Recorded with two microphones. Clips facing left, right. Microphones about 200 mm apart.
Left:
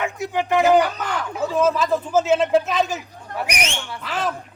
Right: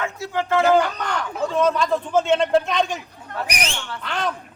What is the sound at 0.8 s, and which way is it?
Speech, 5° left (ahead or behind).